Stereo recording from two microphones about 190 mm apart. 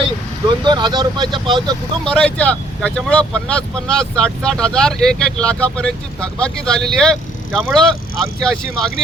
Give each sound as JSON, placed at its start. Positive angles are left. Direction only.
{"t": 0.4, "sound": "speech", "side_deg": -25}
{"t": 2.0, "sound": "speech", "side_deg": 5}